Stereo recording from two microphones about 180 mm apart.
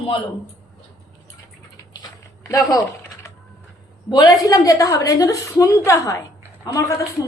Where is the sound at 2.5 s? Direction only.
20° left (ahead or behind).